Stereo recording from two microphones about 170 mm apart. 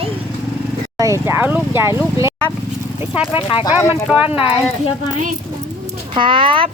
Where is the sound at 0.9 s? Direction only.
15° right (ahead or behind).